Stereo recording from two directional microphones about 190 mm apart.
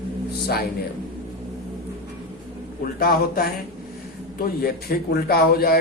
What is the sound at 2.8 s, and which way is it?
A man's voice, 50° left (ahead or behind).